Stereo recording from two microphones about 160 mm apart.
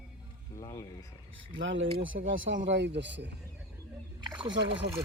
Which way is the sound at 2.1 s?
80° right.